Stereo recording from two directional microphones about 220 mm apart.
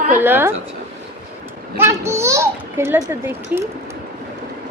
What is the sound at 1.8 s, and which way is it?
A child's voice, 10° right (ahead or behind).